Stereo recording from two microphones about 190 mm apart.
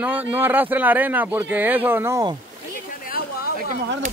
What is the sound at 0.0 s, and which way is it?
Speech, 10° right (ahead or behind).